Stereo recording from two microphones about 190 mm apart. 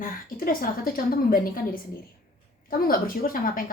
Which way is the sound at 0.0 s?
50° left (ahead or behind).